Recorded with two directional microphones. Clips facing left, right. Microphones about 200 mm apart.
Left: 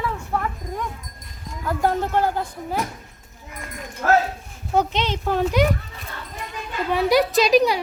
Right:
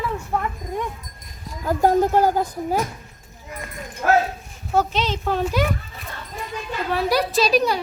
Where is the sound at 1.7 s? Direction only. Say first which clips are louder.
Right 5 dB; 40° right (ahead or behind).